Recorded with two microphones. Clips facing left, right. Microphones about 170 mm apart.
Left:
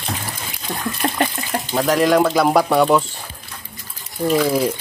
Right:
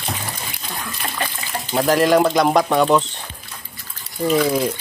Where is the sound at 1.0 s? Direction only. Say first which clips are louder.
Left 8 dB; 45° left (ahead or behind).